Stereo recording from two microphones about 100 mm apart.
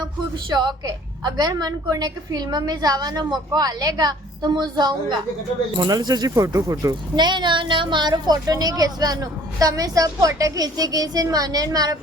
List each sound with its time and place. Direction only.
0.5 s a woman's voice: 45° right (ahead or behind)
7.3 s speech: 50° right (ahead or behind)